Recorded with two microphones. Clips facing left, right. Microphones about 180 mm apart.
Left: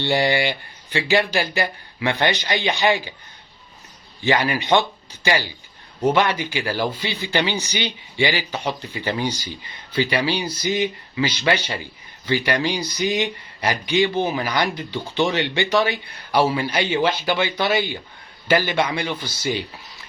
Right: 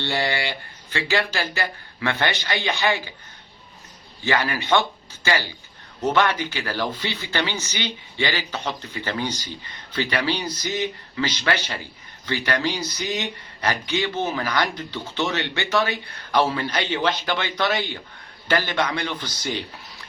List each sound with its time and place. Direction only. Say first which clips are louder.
0.0 s speech: left 5 dB; 15° left (ahead or behind)
4.2 s speech: left 3 dB; 15° left (ahead or behind)